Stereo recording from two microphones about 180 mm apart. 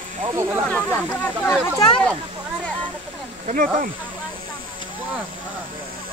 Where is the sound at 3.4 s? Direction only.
45° right (ahead or behind).